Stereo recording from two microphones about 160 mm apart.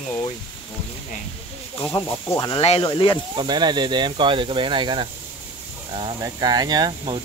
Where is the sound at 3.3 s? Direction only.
25° right (ahead or behind).